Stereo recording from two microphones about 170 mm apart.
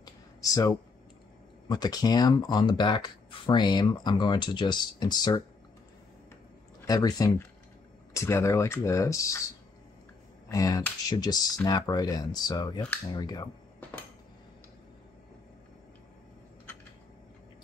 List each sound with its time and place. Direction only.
0.0 s a sound: 20° left (ahead or behind)
1.7 s speech: 20° left (ahead or behind)
6.9 s speech: 20° left (ahead or behind)
10.5 s speech: 20° left (ahead or behind)